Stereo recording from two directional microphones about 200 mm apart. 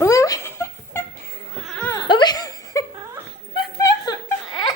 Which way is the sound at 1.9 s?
20° left (ahead or behind).